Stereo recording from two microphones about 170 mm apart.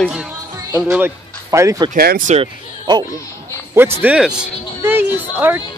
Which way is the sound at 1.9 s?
65° right (ahead or behind).